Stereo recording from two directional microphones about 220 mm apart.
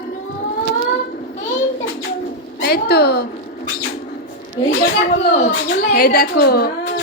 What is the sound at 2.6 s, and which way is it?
Speech, 45° left (ahead or behind).